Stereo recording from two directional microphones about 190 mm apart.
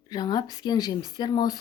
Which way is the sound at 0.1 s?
20° left (ahead or behind).